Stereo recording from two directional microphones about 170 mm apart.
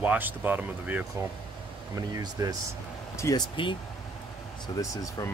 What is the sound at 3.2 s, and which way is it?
Speech, 20° left (ahead or behind).